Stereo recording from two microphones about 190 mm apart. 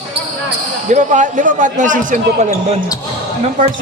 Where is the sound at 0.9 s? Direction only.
40° right (ahead or behind).